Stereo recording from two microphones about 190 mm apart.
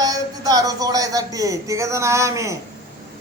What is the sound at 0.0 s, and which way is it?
Speech, 20° right (ahead or behind).